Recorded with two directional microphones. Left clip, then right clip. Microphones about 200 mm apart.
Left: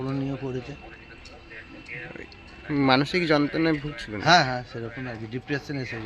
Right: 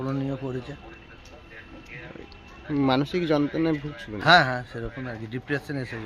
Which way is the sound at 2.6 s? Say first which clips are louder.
Left 2 dB; 5° right (ahead or behind).